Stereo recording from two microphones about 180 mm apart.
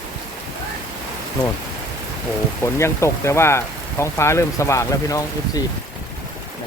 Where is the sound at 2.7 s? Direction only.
15° left (ahead or behind).